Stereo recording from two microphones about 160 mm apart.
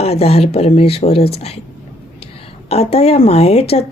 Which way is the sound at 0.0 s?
40° left (ahead or behind).